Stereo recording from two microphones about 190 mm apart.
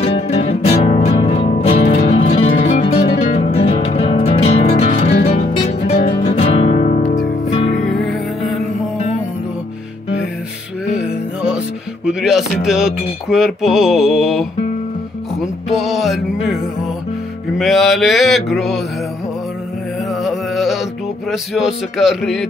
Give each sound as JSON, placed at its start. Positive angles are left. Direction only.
{"t": 0.0, "sound": "music", "side_deg": 35}
{"t": 5.9, "sound": "music", "side_deg": 45}
{"t": 6.3, "sound": "music", "side_deg": 30}
{"t": 8.0, "sound": "music", "side_deg": 0}
{"t": 11.0, "sound": "music", "side_deg": -5}
{"t": 15.8, "sound": "music", "side_deg": 0}
{"t": 17.6, "sound": "music", "side_deg": 0}
{"t": 20.2, "sound": "music", "side_deg": 0}